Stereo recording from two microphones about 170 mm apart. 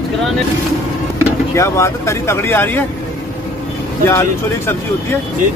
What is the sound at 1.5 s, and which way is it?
Speech, 15° left (ahead or behind).